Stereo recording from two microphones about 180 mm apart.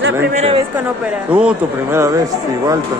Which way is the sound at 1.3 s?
5° right (ahead or behind).